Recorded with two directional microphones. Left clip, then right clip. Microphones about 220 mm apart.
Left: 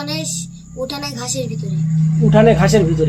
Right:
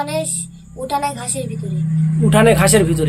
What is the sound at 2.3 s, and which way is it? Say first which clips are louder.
Speech: even; 25° right (ahead or behind).